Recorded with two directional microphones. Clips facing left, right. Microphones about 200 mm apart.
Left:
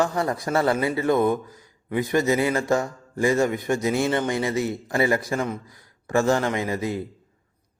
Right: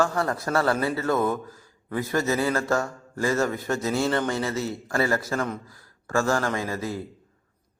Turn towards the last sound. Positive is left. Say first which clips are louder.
# left 3 dB
turn(degrees=20)  # may be behind; listen again after turning